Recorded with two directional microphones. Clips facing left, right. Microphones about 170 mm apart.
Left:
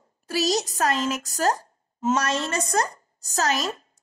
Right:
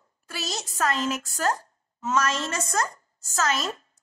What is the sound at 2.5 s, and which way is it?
A woman's voice, 35° left (ahead or behind).